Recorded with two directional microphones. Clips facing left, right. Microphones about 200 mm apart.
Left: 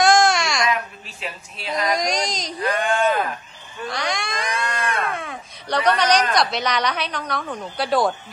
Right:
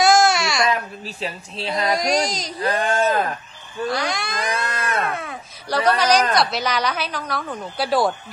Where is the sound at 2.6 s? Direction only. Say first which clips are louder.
Even; 40° right (ahead or behind).